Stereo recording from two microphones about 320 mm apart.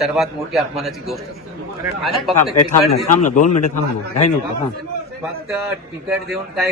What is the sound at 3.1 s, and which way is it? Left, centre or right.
Speech, left.